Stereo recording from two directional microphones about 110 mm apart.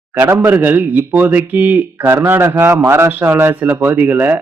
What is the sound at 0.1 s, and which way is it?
A man's voice, 20° right (ahead or behind).